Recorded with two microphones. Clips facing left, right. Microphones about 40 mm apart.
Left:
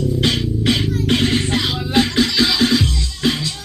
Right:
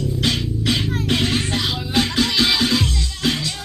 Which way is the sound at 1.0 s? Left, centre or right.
Centre.